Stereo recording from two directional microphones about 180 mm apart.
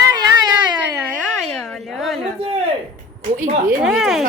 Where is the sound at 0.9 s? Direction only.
5° right (ahead or behind).